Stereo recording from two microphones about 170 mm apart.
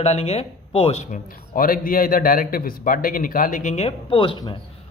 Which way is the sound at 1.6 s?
55° left (ahead or behind).